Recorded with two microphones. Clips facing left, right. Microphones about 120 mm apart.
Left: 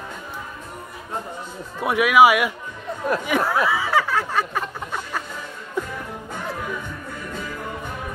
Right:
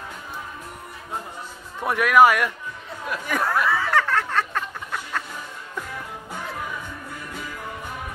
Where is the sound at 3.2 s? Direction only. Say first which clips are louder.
Right 1 dB; centre (ahead or behind).